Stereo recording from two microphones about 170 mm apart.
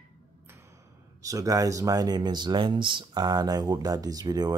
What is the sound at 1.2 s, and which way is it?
Speech, 20° right (ahead or behind).